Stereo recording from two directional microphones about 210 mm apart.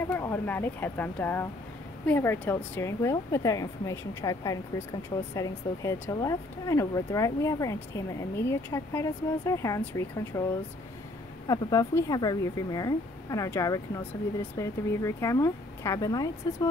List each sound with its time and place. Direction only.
0.0 s speech: 10° left (ahead or behind)
11.4 s speech: 20° left (ahead or behind)